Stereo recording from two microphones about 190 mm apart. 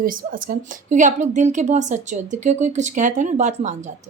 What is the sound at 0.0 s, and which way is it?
A woman's voice, 45° right (ahead or behind).